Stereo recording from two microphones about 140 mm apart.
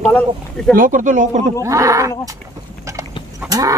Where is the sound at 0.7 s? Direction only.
75° right (ahead or behind).